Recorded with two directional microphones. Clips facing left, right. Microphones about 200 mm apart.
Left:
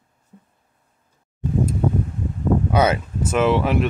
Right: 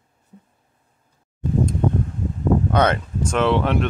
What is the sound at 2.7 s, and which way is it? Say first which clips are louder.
Speech: even; 5° left (ahead or behind).